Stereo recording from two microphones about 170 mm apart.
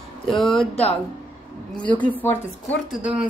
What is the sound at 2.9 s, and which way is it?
Speech, 5° right (ahead or behind).